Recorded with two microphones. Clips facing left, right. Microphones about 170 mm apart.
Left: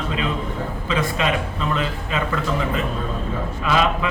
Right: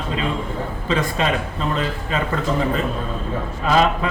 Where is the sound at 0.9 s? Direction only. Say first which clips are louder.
Right 1 dB; 40° right (ahead or behind).